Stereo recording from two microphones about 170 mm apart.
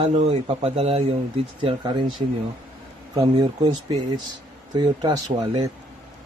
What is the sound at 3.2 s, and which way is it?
Speech, 25° right (ahead or behind).